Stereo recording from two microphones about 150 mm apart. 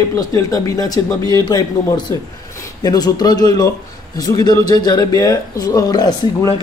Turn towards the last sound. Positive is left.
turn(degrees=25)  # may be behind; listen again after turning